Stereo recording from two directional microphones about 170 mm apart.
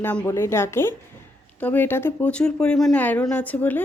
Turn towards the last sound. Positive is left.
turn(degrees=10)  # may be behind; listen again after turning